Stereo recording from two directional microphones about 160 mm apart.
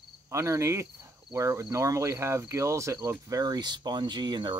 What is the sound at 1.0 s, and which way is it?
Speech, 20° right (ahead or behind).